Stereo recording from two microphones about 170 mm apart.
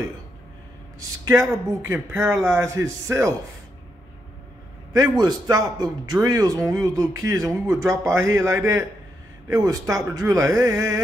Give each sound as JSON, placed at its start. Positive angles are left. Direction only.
{"t": 0.9, "sound": "speech", "side_deg": -15}
{"t": 4.9, "sound": "speech", "side_deg": -20}